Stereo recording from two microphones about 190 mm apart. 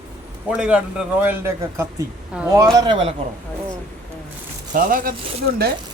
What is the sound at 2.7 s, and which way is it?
Speech, 25° right (ahead or behind).